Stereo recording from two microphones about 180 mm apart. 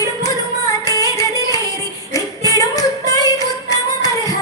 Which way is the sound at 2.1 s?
20° left (ahead or behind).